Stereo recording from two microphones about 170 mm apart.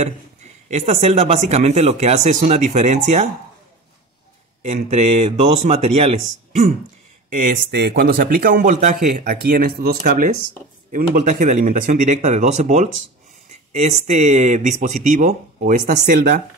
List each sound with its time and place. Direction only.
0.0 s a man's voice: 40° right (ahead or behind)
4.8 s a man's voice: 40° right (ahead or behind)
7.2 s speech: 50° right (ahead or behind)
7.7 s a man's voice: 70° right (ahead or behind)